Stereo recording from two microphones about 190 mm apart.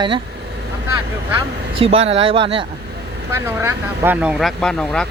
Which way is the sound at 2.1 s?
30° right (ahead or behind).